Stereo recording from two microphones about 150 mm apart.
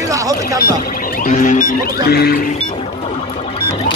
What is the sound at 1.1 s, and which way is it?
Music, 60° left (ahead or behind).